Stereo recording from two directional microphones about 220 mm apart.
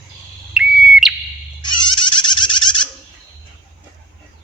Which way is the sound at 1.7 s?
20° left (ahead or behind).